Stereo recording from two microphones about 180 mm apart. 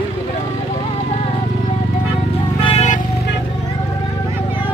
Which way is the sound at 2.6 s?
35° left (ahead or behind).